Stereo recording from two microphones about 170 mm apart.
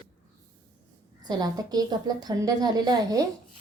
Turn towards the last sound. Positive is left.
turn(degrees=-25)  # may be behind; listen again after turning